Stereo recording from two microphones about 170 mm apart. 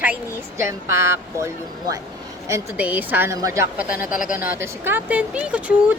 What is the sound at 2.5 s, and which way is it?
Speech, 10° right (ahead or behind).